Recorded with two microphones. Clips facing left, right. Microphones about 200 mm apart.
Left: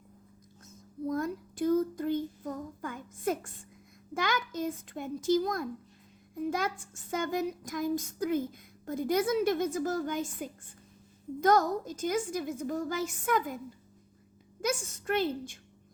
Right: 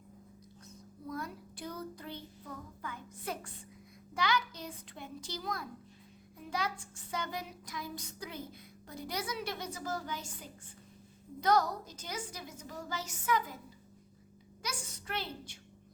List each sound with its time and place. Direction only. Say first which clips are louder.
1.0 s child singing: left 10 dB; 45° left (ahead or behind)
4.1 s a child's voice: left 2 dB; 50° left (ahead or behind)
14.6 s a woman's voice: left 11 dB; 50° left (ahead or behind)